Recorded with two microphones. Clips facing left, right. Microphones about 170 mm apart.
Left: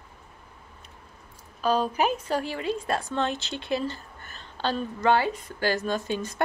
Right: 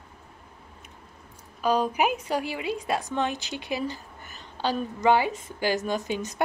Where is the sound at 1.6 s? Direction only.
15° right (ahead or behind).